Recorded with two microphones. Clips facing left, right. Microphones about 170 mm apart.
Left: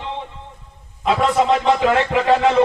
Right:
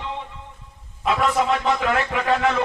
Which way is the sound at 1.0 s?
30° left (ahead or behind).